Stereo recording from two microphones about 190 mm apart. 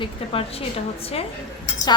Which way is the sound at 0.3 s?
30° left (ahead or behind).